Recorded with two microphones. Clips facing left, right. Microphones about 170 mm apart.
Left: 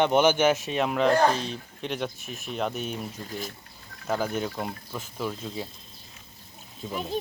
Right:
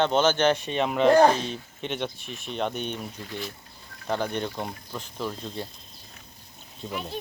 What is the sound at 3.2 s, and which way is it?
Speech, 40° left (ahead or behind).